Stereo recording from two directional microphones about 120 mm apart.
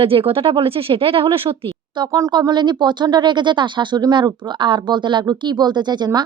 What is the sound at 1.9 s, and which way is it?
Speech, 35° right (ahead or behind).